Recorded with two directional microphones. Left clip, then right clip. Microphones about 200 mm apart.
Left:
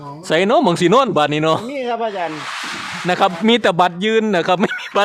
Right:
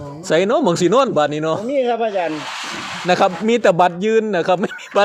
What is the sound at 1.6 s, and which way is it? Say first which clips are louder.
Speech: right 3 dB; 35° left (ahead or behind).